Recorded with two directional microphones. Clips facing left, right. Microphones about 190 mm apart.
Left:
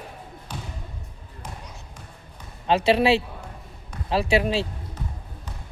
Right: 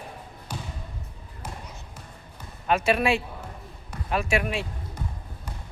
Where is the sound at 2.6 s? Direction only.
30° left (ahead or behind).